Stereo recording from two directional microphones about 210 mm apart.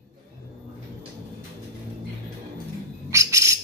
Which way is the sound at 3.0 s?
15° right (ahead or behind).